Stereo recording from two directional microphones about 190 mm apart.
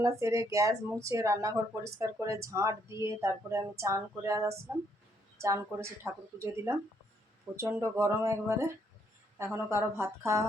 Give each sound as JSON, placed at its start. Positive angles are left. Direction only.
{"t": 0.0, "sound": "speech", "side_deg": -15}